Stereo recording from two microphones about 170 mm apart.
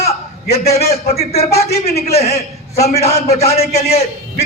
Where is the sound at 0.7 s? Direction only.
40° left (ahead or behind).